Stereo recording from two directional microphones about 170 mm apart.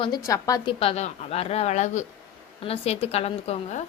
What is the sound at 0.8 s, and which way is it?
Speech, 35° left (ahead or behind).